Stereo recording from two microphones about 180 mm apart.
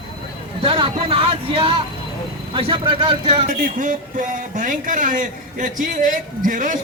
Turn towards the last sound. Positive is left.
turn(degrees=-45)  # may be behind; listen again after turning